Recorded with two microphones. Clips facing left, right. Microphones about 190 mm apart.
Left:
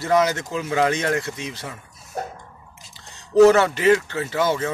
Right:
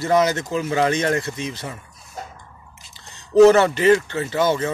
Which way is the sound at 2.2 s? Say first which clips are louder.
Left 6 dB; 60° left (ahead or behind).